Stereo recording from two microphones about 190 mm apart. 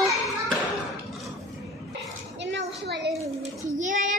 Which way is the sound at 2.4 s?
70° right (ahead or behind).